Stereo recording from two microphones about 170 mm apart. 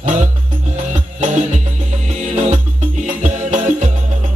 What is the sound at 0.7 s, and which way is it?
Music, 45° right (ahead or behind).